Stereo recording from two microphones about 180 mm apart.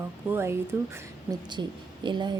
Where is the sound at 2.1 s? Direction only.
25° right (ahead or behind).